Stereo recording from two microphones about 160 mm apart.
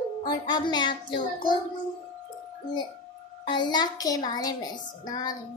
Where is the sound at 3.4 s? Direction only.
30° left (ahead or behind).